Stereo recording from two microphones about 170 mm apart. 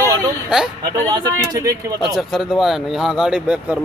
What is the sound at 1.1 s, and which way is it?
Speech, 20° right (ahead or behind).